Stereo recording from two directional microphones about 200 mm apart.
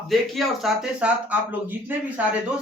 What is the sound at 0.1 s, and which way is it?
Speech, centre (ahead or behind).